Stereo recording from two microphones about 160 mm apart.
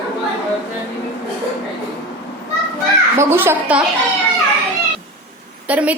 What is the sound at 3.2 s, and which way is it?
Speech, 15° right (ahead or behind).